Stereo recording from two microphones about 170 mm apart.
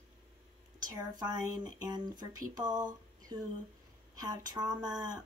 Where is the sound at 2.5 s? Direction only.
25° right (ahead or behind).